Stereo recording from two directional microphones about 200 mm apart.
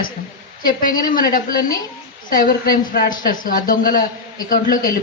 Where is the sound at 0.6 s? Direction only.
45° left (ahead or behind).